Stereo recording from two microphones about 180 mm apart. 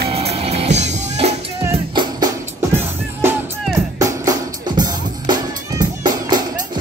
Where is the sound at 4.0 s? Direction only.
20° right (ahead or behind).